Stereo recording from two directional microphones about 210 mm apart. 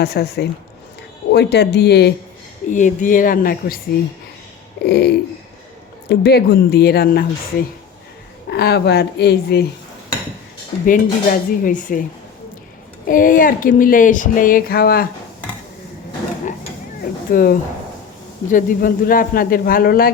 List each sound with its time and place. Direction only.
0.0 s a man's voice: 50° left (ahead or behind)
2.6 s speech: 35° left (ahead or behind)
4.9 s a man's voice: 50° left (ahead or behind)
8.4 s a man's voice: 50° left (ahead or behind)
10.8 s speech: 40° left (ahead or behind)
13.1 s speech: 40° left (ahead or behind)
17.0 s cat: 45° left (ahead or behind)
18.4 s a man's voice: 40° left (ahead or behind)